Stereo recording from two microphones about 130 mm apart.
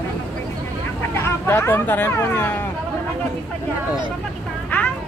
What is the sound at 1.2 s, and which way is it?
Speech, 20° left (ahead or behind).